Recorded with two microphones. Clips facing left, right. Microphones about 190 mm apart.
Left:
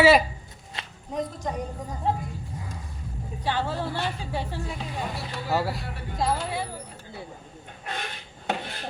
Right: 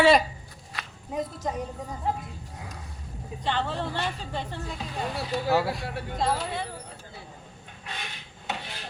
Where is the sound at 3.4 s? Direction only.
10° left (ahead or behind).